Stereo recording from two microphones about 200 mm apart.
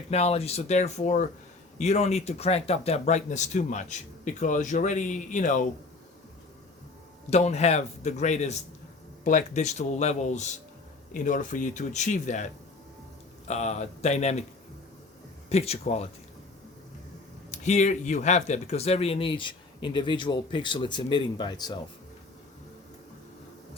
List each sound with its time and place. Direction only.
0.1 s speech: 30° left (ahead or behind)
7.3 s speech: 35° left (ahead or behind)
13.5 s speech: 35° left (ahead or behind)
15.4 s speech: 30° left (ahead or behind)
17.5 s speech: 35° left (ahead or behind)